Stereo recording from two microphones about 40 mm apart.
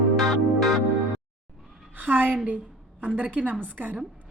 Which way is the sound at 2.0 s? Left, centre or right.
Right.